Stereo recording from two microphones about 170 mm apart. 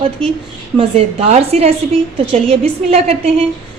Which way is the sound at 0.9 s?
35° right (ahead or behind).